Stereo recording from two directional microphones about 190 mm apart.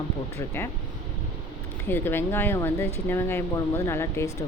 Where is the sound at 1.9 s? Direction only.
10° left (ahead or behind).